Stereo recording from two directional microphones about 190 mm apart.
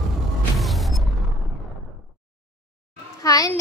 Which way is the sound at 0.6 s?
Centre (ahead or behind).